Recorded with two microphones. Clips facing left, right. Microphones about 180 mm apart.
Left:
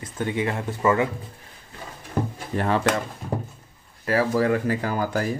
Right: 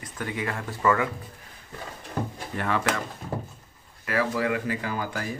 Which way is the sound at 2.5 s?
30° left (ahead or behind).